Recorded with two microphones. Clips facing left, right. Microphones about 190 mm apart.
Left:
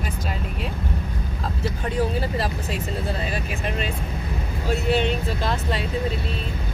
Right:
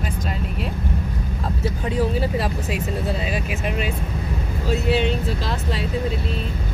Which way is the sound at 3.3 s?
5° right (ahead or behind).